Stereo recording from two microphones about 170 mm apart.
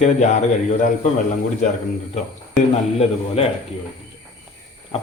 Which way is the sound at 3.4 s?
35° left (ahead or behind).